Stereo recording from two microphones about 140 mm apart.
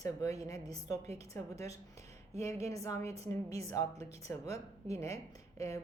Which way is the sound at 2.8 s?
20° left (ahead or behind).